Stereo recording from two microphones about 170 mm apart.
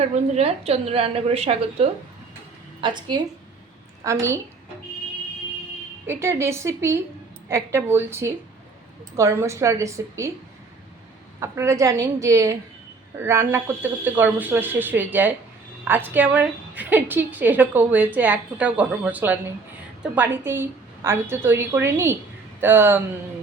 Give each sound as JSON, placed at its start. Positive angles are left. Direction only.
{"t": 0.0, "sound": "a woman's voice", "side_deg": -40}
{"t": 6.1, "sound": "a woman's voice", "side_deg": -15}
{"t": 11.3, "sound": "a woman's voice", "side_deg": -15}